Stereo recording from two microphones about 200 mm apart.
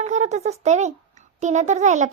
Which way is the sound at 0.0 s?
35° right (ahead or behind).